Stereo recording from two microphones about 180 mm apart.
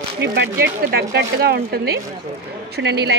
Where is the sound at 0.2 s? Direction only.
70° right (ahead or behind).